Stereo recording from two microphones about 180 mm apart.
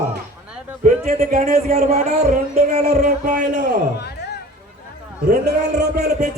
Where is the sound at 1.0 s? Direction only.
50° right (ahead or behind).